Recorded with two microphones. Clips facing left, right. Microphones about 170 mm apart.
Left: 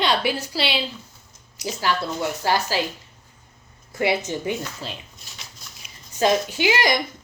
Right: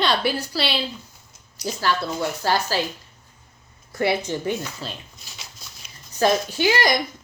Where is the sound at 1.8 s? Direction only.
15° left (ahead or behind).